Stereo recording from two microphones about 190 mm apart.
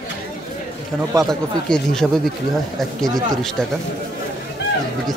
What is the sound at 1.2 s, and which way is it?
Speech, centre (ahead or behind).